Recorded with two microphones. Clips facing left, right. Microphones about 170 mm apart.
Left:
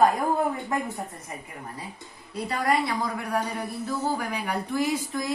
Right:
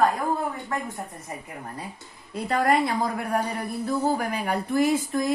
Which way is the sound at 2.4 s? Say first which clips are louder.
Right 3 dB; 50° right (ahead or behind).